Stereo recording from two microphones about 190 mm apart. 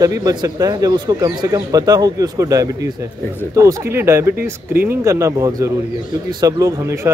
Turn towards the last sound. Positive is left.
turn(degrees=-15)  # may be behind; listen again after turning